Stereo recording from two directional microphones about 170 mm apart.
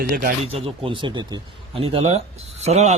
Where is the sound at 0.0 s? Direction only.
60° right (ahead or behind).